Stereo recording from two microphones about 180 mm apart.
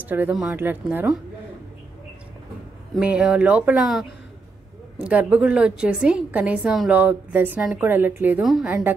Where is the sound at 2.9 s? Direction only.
5° right (ahead or behind).